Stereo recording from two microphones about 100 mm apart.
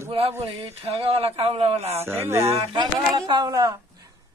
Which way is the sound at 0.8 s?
70° right (ahead or behind).